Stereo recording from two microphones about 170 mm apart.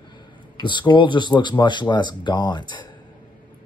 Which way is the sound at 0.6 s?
25° left (ahead or behind).